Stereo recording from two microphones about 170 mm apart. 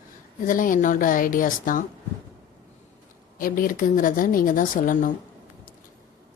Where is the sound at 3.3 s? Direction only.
55° left (ahead or behind).